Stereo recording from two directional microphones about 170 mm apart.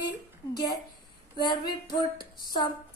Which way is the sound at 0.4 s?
25° left (ahead or behind).